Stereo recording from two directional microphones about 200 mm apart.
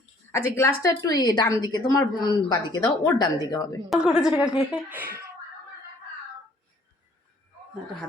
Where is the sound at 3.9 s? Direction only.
5° right (ahead or behind).